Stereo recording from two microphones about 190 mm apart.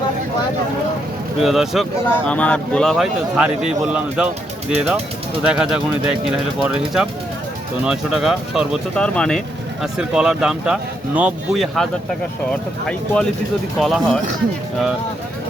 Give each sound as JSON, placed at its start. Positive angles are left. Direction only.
{"t": 1.4, "sound": "speech", "side_deg": 0}